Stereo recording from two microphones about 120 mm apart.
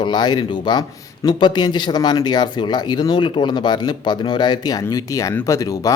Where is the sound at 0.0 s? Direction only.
40° left (ahead or behind).